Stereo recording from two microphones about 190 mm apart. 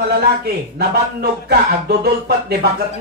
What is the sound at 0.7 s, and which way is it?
A man's voice, 55° right (ahead or behind).